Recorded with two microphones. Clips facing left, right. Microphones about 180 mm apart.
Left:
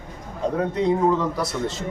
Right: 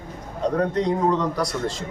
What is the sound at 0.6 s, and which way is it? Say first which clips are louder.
Speech: left 2 dB; 5° left (ahead or behind).